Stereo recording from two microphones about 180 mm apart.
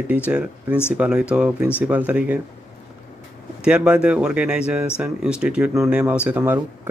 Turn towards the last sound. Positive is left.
turn(degrees=-10)  # may be behind; listen again after turning